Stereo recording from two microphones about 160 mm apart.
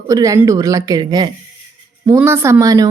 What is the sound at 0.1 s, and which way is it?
Speech, 20° right (ahead or behind).